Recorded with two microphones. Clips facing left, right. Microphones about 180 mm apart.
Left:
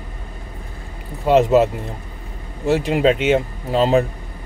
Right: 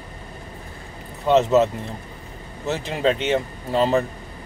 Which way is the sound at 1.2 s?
10° left (ahead or behind).